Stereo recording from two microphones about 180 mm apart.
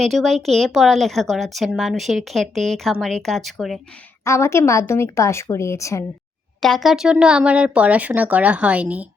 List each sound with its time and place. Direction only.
0.0 s speech: centre (ahead or behind)
4.2 s a woman's voice: 15° left (ahead or behind)
6.6 s speech: centre (ahead or behind)